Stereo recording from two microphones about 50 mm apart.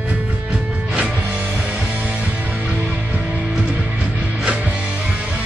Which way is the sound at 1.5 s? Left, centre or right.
Centre.